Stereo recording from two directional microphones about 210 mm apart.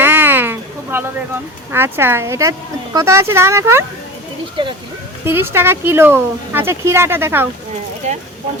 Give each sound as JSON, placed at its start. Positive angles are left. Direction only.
{"t": 0.0, "sound": "a sound", "side_deg": -10}
{"t": 1.7, "sound": "speech", "side_deg": -10}
{"t": 5.2, "sound": "speech", "side_deg": -10}
{"t": 8.0, "sound": "speech", "side_deg": -35}